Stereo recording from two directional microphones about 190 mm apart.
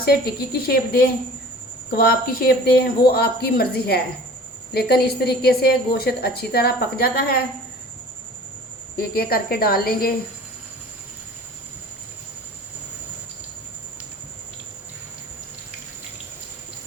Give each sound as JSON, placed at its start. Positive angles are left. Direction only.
{"t": 0.0, "sound": "a woman's voice", "side_deg": 55}
{"t": 9.0, "sound": "speech", "side_deg": 55}